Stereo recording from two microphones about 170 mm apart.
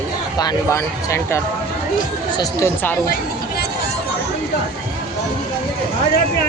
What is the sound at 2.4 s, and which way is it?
Speech, 15° left (ahead or behind).